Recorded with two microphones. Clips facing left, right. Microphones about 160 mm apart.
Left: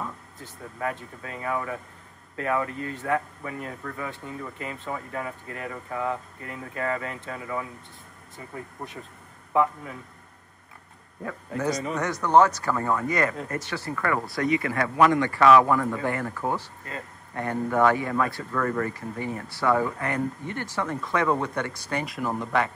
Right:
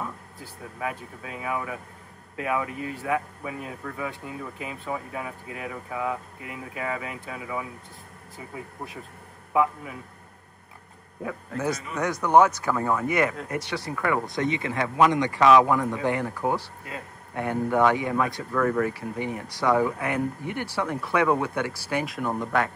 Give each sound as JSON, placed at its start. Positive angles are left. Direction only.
{"t": 0.0, "sound": "a man's voice", "side_deg": -5}
{"t": 11.2, "sound": "a man's voice", "side_deg": -5}
{"t": 12.2, "sound": "speech", "side_deg": -15}
{"t": 18.5, "sound": "speech", "side_deg": -5}